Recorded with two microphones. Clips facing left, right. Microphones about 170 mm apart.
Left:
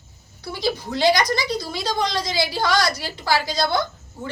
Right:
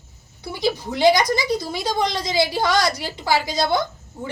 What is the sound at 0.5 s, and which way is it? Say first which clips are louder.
Speech: right 1 dB; 20° right (ahead or behind).